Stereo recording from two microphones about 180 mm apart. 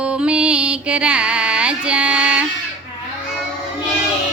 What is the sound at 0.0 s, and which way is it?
Music, 5° right (ahead or behind).